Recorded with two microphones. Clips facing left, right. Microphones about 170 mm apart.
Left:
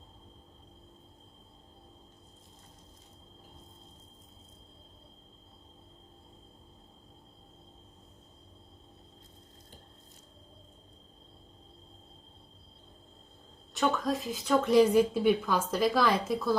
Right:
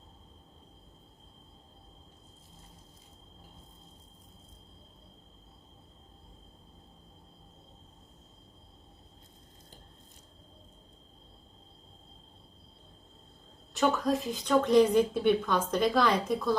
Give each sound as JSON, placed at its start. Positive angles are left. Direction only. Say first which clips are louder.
{"t": 13.7, "sound": "speech", "louder": "right 2 dB", "side_deg": 0}